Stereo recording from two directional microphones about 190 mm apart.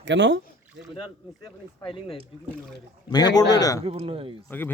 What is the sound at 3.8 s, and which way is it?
Speech, 30° right (ahead or behind).